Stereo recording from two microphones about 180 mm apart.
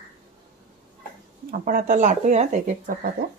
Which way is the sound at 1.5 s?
50° right (ahead or behind).